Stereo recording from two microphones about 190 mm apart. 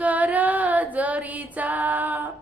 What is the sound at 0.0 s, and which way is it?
Female singing, 10° right (ahead or behind).